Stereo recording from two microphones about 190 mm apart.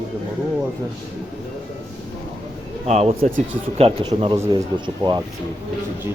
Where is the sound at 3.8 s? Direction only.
30° right (ahead or behind).